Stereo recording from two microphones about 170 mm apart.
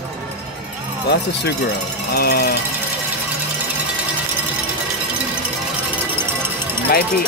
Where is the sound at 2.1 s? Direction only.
65° left (ahead or behind).